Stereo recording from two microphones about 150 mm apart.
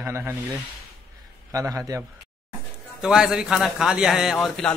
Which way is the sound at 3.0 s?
5° right (ahead or behind).